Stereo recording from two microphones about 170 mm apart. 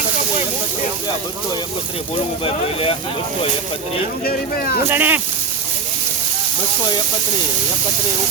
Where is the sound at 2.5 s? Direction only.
35° left (ahead or behind).